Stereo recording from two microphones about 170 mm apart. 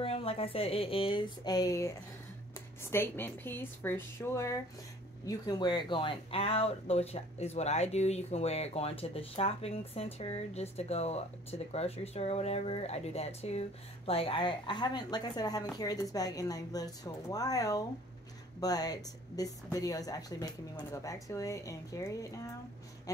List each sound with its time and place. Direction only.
0.0 s speech: 35° left (ahead or behind); by 23.2 s 20° left (ahead or behind)